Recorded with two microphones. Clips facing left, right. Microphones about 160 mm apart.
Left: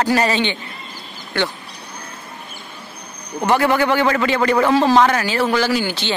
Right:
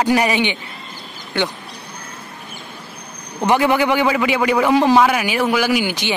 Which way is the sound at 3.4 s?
15° right (ahead or behind).